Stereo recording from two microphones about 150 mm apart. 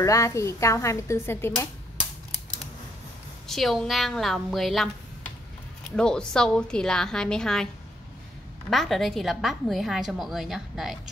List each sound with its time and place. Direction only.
0.0 s speech: 20° left (ahead or behind)
3.4 s a woman's voice: centre (ahead or behind)
5.9 s a woman's voice: 5° left (ahead or behind)